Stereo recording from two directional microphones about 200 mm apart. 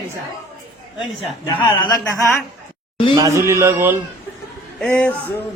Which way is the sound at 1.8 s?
15° left (ahead or behind).